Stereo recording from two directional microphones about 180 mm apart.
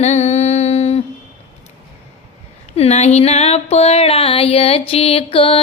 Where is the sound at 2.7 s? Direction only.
35° left (ahead or behind).